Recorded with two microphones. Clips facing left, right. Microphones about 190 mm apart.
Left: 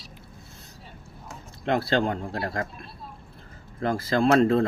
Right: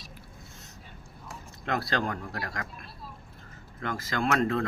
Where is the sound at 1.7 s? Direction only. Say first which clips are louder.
Left 6 dB; 30° left (ahead or behind).